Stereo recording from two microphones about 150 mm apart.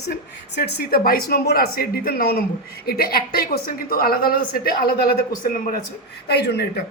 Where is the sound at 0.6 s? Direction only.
90° left.